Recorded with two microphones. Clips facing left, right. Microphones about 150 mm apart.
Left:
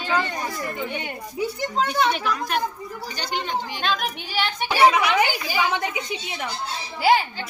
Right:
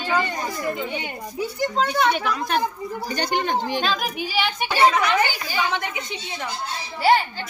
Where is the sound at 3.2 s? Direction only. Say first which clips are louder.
Right 4 dB; 50° right (ahead or behind).